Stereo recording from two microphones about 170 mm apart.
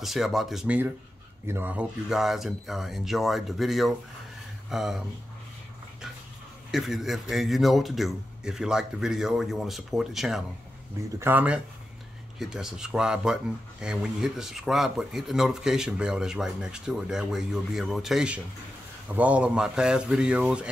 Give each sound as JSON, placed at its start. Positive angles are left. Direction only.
{"t": 0.0, "sound": "speech", "side_deg": 0}
{"t": 6.7, "sound": "speech", "side_deg": 0}